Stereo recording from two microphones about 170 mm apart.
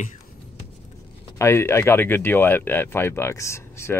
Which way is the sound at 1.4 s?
15° left (ahead or behind).